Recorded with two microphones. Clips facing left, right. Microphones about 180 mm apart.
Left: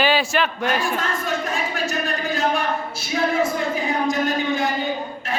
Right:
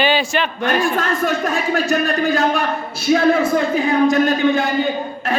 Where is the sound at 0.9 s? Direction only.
65° right (ahead or behind).